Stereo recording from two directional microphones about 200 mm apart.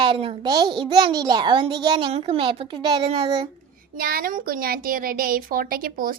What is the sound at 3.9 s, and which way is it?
A woman's voice, 45° right (ahead or behind).